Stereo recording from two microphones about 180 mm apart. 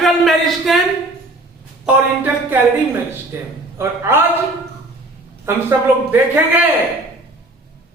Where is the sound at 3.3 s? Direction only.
15° right (ahead or behind).